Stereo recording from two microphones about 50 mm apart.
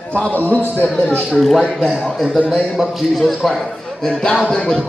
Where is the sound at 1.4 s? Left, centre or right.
Centre.